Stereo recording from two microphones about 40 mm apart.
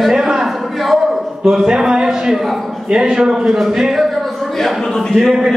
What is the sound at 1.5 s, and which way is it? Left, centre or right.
Speech, centre.